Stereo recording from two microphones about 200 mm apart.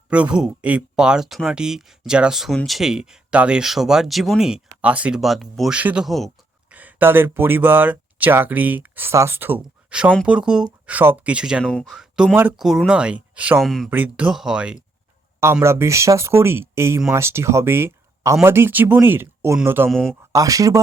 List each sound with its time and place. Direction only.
0.1 s speech: 5° right (ahead or behind)